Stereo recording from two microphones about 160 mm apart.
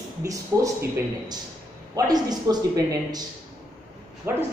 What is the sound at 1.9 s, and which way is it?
Speech, 25° right (ahead or behind).